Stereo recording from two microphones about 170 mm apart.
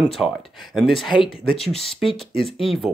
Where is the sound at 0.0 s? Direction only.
Centre (ahead or behind).